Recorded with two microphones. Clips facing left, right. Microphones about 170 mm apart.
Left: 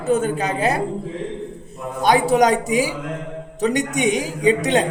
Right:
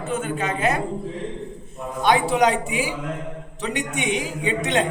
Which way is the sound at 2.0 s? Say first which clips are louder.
Left 3 dB; 40° left (ahead or behind).